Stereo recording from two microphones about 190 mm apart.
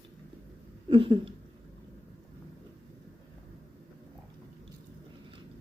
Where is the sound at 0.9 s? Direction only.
25° right (ahead or behind).